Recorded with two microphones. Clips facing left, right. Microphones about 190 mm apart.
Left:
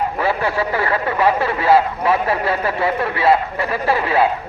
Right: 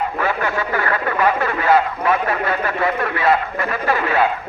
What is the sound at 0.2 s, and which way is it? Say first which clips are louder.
Speech: left 3 dB; 30° left (ahead or behind).